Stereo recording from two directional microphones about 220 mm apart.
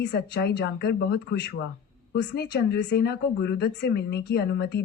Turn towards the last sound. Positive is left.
turn(degrees=50)  # may be behind; listen again after turning